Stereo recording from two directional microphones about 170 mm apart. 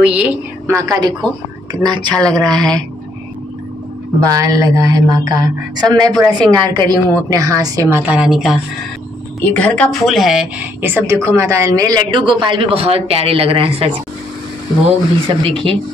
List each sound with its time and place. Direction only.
0.0 s a woman's voice: 5° right (ahead or behind); by 2.1 s 25° right (ahead or behind)
2.1 s a woman's voice: 5° left (ahead or behind)
4.2 s a woman's voice: 20° right (ahead or behind)
8.0 s a woman's voice: 5° right (ahead or behind)
9.4 s a woman's voice: 10° left (ahead or behind); by 13.9 s 30° right (ahead or behind)
15.2 s speech: 30° right (ahead or behind)